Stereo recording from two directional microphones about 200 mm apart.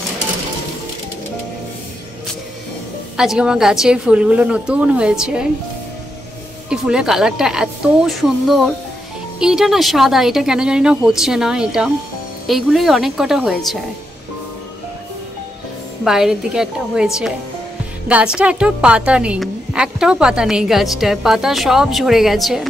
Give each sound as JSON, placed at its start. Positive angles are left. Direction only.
{"t": 3.2, "sound": "a woman's voice", "side_deg": -5}
{"t": 6.7, "sound": "a woman's voice", "side_deg": -5}
{"t": 16.0, "sound": "a woman's voice", "side_deg": 0}